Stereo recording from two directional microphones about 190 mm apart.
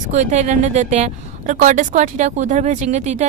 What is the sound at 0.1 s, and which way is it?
A woman's voice, 40° right (ahead or behind).